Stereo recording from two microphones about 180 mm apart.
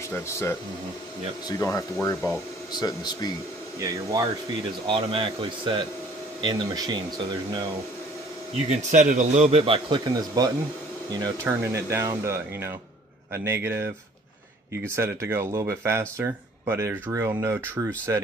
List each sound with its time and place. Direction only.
0.1 s speech: 15° left (ahead or behind)
1.6 s speech: 15° left (ahead or behind)
3.8 s speech: 20° right (ahead or behind)
8.6 s speech: 45° right (ahead or behind); by 17.6 s 15° right (ahead or behind)